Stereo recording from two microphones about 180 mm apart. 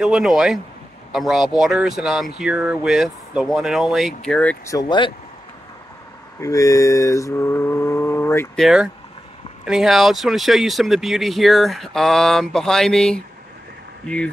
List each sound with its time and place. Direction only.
0.0 s speech: centre (ahead or behind)
4.7 s speech: 25° left (ahead or behind)
6.4 s mantra: 20° left (ahead or behind)
8.5 s speech: 5° right (ahead or behind)